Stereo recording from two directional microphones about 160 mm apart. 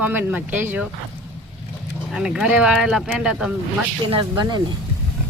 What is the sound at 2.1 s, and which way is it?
Speech, 5° right (ahead or behind).